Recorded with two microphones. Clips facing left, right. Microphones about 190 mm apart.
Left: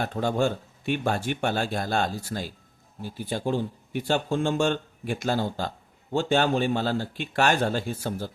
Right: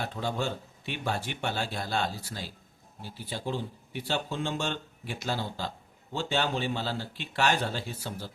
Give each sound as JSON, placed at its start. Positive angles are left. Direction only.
{"t": 0.0, "sound": "speech", "side_deg": 50}